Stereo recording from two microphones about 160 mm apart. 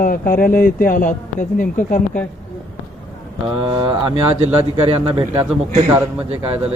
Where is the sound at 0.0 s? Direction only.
60° left (ahead or behind).